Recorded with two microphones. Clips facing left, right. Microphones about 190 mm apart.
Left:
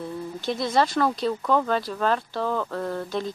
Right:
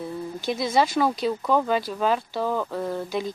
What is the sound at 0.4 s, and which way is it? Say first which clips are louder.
Speech: even; 5° right (ahead or behind).